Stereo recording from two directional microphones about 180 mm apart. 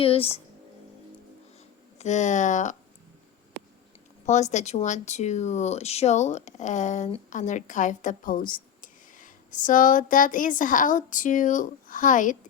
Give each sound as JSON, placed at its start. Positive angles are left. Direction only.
{"t": 0.0, "sound": "speech", "side_deg": 30}
{"t": 2.0, "sound": "speech", "side_deg": 40}
{"t": 4.3, "sound": "speech", "side_deg": 40}